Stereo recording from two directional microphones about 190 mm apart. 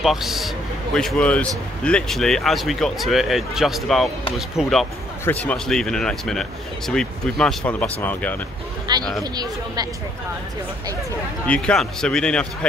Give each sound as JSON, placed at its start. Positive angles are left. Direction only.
{"t": 0.0, "sound": "speech", "side_deg": 0}
{"t": 8.9, "sound": "speech", "side_deg": -20}
{"t": 11.4, "sound": "speech", "side_deg": 5}